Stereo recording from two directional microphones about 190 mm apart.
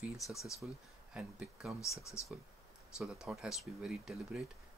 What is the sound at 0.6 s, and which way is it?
Speech, 5° right (ahead or behind).